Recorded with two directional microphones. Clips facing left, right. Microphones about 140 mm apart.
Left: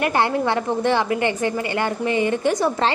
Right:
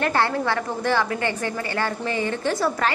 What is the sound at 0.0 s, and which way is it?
A woman's voice, 20° left (ahead or behind).